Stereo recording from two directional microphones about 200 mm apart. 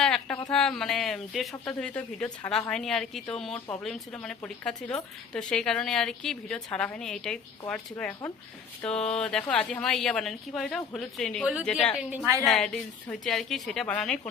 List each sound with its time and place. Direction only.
0.0 s a sound: 5° left (ahead or behind)
0.5 s a woman's voice: 5° left (ahead or behind)
12.1 s a woman's voice: 10° right (ahead or behind)
12.5 s speech: 5° left (ahead or behind)